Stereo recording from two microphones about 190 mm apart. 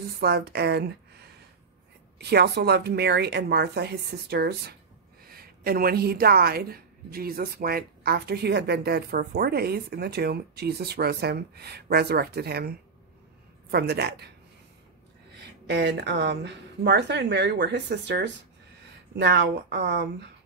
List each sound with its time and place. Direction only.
0.2 s a woman's voice: 60° right (ahead or behind)
15.3 s a woman's voice: 60° right (ahead or behind)